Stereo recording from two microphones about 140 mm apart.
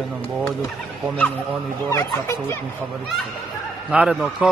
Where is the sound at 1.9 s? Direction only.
20° left (ahead or behind).